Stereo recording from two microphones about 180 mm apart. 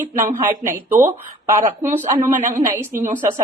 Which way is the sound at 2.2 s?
45° right (ahead or behind).